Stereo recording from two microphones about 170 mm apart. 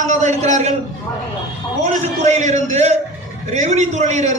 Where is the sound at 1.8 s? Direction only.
45° right (ahead or behind).